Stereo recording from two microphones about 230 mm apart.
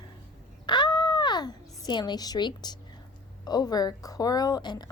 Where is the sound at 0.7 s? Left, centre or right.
Centre.